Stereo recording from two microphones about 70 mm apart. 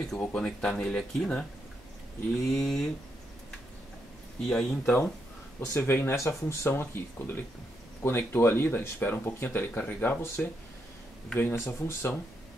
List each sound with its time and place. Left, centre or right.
0.2 s speech: centre
2.5 s speech: centre
4.4 s speech: centre
5.6 s speech: left